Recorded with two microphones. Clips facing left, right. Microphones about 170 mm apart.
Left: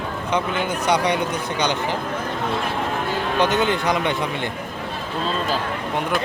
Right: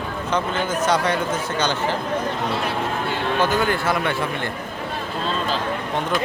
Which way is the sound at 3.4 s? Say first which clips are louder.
Left 2 dB; 20° left (ahead or behind).